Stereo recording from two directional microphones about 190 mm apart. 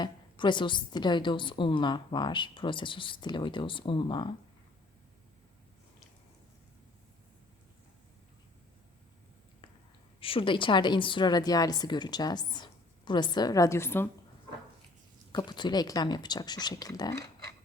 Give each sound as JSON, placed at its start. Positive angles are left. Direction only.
{"t": 0.0, "sound": "a woman's voice", "side_deg": 25}
{"t": 10.2, "sound": "a woman's voice", "side_deg": 30}
{"t": 15.3, "sound": "a woman's voice", "side_deg": 25}